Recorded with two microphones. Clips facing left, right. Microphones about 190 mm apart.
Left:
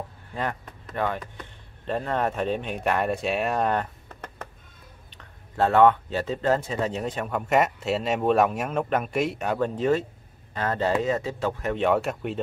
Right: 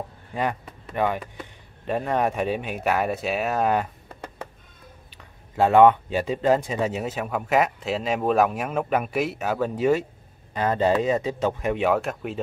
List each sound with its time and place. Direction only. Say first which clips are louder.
0.3 s speech: right 4 dB; 15° right (ahead or behind)
11.9 s speech: even; centre (ahead or behind)